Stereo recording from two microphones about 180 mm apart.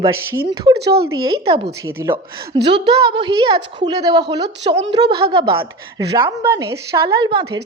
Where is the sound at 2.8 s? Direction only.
25° right (ahead or behind).